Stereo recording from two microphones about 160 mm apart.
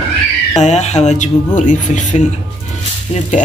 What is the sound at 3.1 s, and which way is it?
Speech, 35° left (ahead or behind).